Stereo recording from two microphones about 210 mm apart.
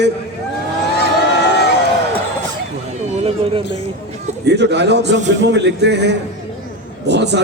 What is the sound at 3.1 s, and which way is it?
Speech, 25° right (ahead or behind).